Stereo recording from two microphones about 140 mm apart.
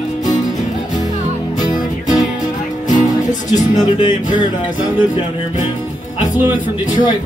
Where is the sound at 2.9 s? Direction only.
65° left (ahead or behind).